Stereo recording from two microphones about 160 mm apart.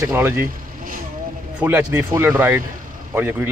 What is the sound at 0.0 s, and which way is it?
Speech, 15° right (ahead or behind).